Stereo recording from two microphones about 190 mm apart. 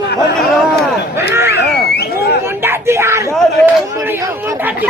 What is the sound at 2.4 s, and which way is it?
Speech, 10° right (ahead or behind).